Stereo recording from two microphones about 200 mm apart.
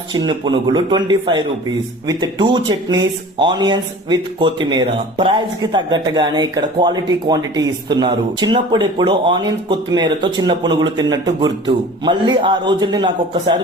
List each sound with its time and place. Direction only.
0.1 s speech: 20° right (ahead or behind)